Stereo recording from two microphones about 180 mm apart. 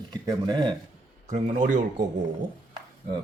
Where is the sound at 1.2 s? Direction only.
40° right (ahead or behind).